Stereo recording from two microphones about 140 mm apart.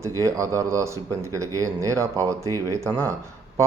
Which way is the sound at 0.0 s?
20° right (ahead or behind).